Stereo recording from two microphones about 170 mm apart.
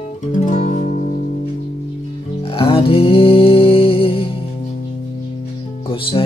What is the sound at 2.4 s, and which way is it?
Music, 35° left (ahead or behind).